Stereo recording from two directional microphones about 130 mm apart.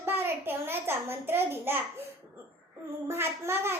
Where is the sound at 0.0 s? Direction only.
15° right (ahead or behind).